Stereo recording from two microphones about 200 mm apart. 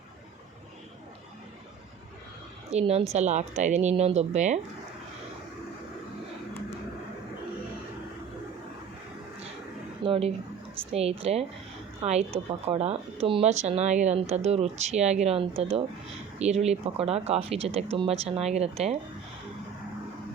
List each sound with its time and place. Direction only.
2.6 s a woman's voice: 30° right (ahead or behind)
10.0 s speech: 30° right (ahead or behind)